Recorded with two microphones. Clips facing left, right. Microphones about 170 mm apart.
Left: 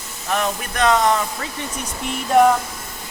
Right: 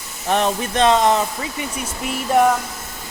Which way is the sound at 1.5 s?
5° right (ahead or behind).